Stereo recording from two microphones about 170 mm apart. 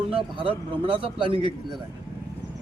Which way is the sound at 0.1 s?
30° right (ahead or behind).